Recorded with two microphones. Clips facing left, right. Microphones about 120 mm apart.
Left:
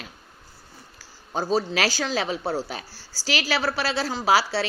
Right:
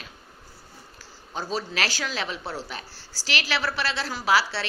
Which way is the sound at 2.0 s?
40° left (ahead or behind).